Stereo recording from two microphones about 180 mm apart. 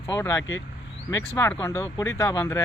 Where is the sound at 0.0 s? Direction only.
15° left (ahead or behind).